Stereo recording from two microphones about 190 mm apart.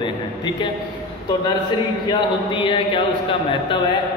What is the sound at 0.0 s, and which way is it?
Speech, 25° left (ahead or behind).